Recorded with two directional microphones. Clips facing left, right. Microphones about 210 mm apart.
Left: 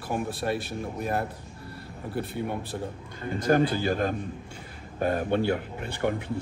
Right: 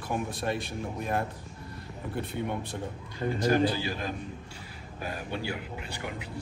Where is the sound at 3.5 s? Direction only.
55° left (ahead or behind).